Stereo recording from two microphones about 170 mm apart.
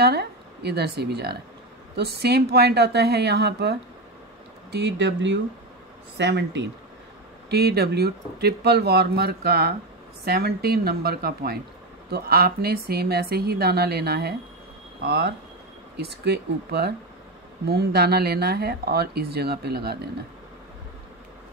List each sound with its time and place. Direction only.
0.0 s speech: 70° right (ahead or behind)
4.6 s speech: 85° right
7.4 s a woman's voice: 70° right (ahead or behind)
15.0 s speech: 80° right